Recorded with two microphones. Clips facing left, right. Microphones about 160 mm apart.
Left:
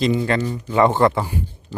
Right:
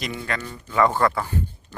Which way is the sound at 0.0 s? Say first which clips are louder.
Left 11 dB; 30° left (ahead or behind).